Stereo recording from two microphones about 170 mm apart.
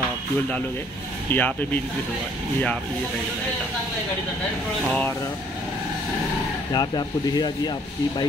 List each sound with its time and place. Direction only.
1.3 s speech: 10° left (ahead or behind)
6.7 s speech: 25° left (ahead or behind)